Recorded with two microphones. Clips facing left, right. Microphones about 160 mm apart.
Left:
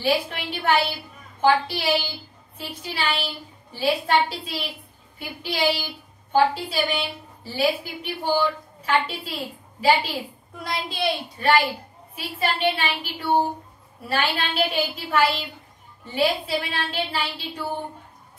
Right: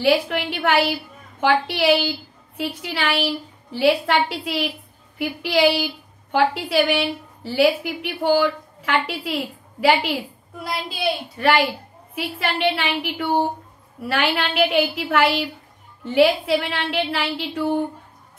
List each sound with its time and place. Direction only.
0.0 s a woman's voice: 75° right (ahead or behind)
9.8 s a woman's voice: 65° right (ahead or behind)
10.6 s a woman's voice: 5° right (ahead or behind)
11.3 s a woman's voice: 70° right (ahead or behind)